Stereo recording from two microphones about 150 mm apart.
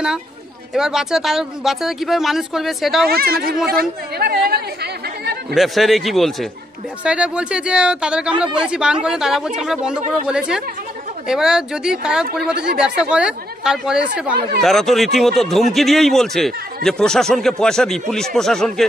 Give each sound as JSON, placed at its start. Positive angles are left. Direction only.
{"t": 0.7, "sound": "speech", "side_deg": -5}
{"t": 3.1, "sound": "speech", "side_deg": -90}
{"t": 5.5, "sound": "speech", "side_deg": 0}